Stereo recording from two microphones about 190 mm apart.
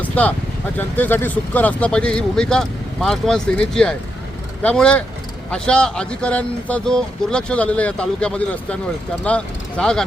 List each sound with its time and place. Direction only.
0.0 s vehicle: 10° left (ahead or behind)
0.8 s speech: 10° left (ahead or behind)